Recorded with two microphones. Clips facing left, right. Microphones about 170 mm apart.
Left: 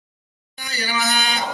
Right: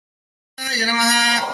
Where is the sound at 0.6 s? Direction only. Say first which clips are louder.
Right 4 dB; 75° right (ahead or behind).